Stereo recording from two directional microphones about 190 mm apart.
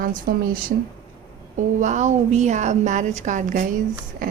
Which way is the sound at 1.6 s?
40° right (ahead or behind).